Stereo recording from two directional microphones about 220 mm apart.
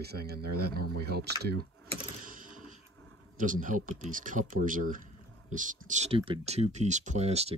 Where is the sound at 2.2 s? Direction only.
35° right (ahead or behind).